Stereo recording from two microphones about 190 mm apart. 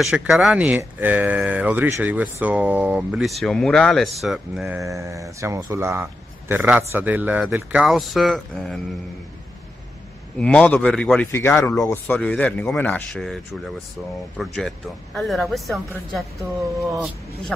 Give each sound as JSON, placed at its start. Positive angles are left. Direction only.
{"t": 0.0, "sound": "speech", "side_deg": -5}
{"t": 4.7, "sound": "speech", "side_deg": -15}
{"t": 10.4, "sound": "speech", "side_deg": 5}
{"t": 14.4, "sound": "speech", "side_deg": 0}